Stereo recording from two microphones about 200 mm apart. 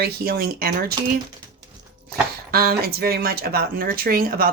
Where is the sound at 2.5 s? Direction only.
50° right (ahead or behind).